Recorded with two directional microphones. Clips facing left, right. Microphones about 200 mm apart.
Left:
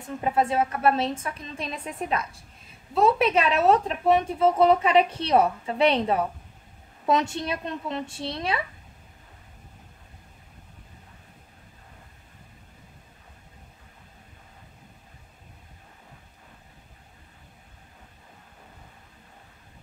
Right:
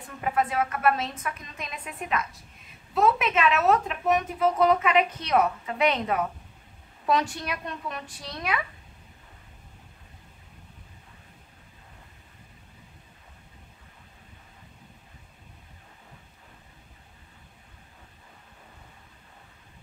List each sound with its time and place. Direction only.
0.2 s speech: 25° left (ahead or behind)